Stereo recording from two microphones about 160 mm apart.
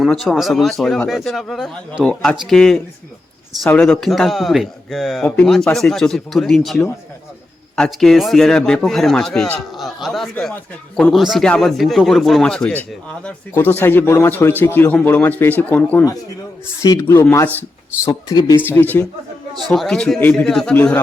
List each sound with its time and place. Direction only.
0.0 s a man's voice: centre (ahead or behind); by 18.6 s 25° left (ahead or behind)
18.6 s speech: 10° left (ahead or behind)
19.6 s a man's voice: centre (ahead or behind)